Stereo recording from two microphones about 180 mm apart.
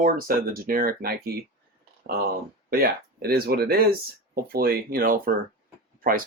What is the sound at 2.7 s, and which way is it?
Speech, 55° right (ahead or behind).